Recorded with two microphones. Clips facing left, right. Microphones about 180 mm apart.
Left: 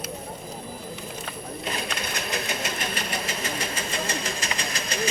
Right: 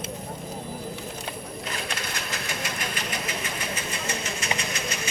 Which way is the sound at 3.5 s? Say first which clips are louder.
Left 2 dB; 35° left (ahead or behind).